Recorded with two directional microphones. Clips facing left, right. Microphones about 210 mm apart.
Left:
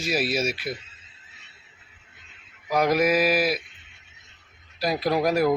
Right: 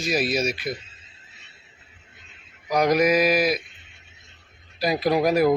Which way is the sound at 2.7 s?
5° left (ahead or behind).